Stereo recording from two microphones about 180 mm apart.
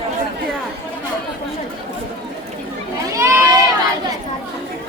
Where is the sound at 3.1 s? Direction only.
15° right (ahead or behind).